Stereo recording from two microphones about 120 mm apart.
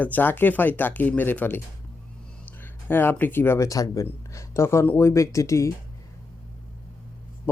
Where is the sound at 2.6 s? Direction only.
20° left (ahead or behind).